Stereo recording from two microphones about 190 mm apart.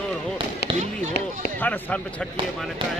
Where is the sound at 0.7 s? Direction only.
35° right (ahead or behind).